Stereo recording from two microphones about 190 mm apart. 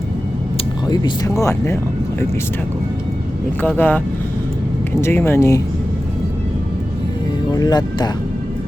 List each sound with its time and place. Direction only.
0.5 s speech: 20° left (ahead or behind)
3.8 s speech: 10° left (ahead or behind)
7.5 s speech: 20° left (ahead or behind)